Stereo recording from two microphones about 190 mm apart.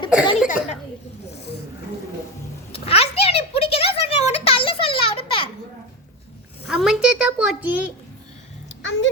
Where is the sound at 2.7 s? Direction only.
30° left (ahead or behind).